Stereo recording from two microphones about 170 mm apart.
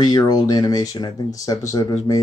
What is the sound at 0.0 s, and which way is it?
Speech, 25° left (ahead or behind).